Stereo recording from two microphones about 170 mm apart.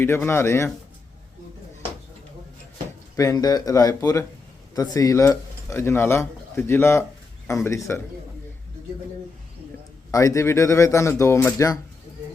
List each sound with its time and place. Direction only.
0.0 s speech: 15° left (ahead or behind)
3.2 s speech: 20° left (ahead or behind)
10.1 s speech: 20° left (ahead or behind)